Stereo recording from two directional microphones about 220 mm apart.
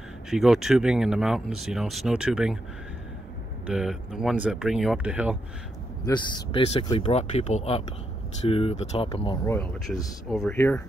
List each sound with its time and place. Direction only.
0.3 s speech: centre (ahead or behind)
3.6 s speech: centre (ahead or behind)
6.0 s speech: 20° left (ahead or behind)
9.5 s speech: 5° left (ahead or behind)